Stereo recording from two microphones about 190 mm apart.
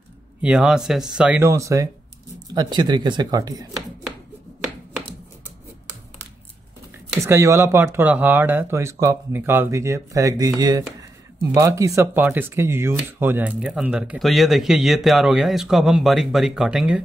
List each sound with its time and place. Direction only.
0.4 s speech: 5° right (ahead or behind)
7.2 s speech: 15° right (ahead or behind)